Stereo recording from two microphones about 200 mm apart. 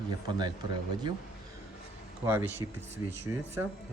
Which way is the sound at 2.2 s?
10° right (ahead or behind).